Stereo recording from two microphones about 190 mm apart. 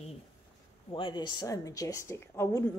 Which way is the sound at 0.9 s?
25° left (ahead or behind).